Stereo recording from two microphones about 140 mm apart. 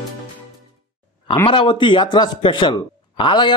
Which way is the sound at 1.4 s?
35° left (ahead or behind).